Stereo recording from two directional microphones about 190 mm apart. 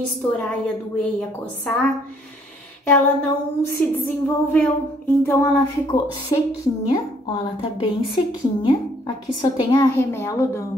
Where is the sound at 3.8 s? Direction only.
5° left (ahead or behind).